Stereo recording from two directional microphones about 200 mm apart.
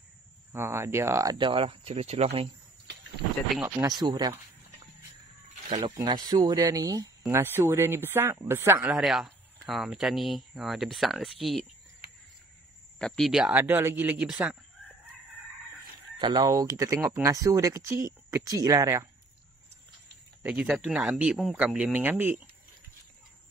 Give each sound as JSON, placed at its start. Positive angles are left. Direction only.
{"t": 0.5, "sound": "speech", "side_deg": -15}
{"t": 3.5, "sound": "speech", "side_deg": -10}
{"t": 5.9, "sound": "speech", "side_deg": -20}
{"t": 13.0, "sound": "speech", "side_deg": 0}
{"t": 16.2, "sound": "speech", "side_deg": -20}
{"t": 20.4, "sound": "speech", "side_deg": -5}